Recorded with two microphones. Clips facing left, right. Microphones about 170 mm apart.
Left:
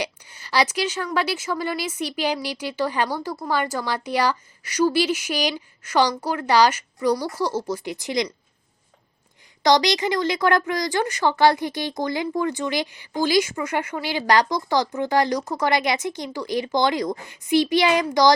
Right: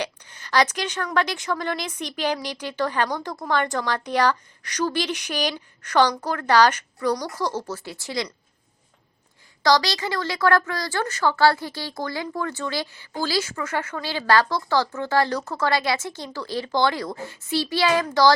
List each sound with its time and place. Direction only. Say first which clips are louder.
0.0 s a woman's voice: left 1 dB; 10° left (ahead or behind)
9.6 s a woman's voice: left 2 dB; 20° left (ahead or behind)